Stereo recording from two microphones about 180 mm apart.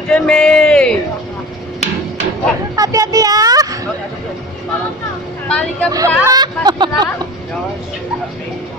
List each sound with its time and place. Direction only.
0.1 s a man's voice: 5° left (ahead or behind)
2.7 s a sound: 20° right (ahead or behind)
5.5 s speech: 5° left (ahead or behind)
5.9 s speech: 20° right (ahead or behind)